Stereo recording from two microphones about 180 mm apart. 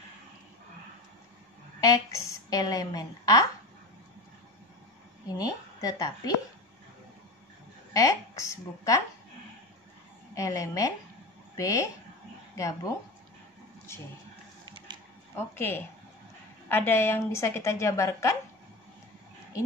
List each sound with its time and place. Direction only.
1.8 s a woman's voice: 20° left (ahead or behind)
5.4 s a woman's voice: 20° left (ahead or behind)
7.9 s a woman's voice: 20° left (ahead or behind)
10.3 s a woman's voice: 20° left (ahead or behind)
14.9 s a sound: 25° right (ahead or behind)
15.3 s a woman's voice: 10° left (ahead or behind)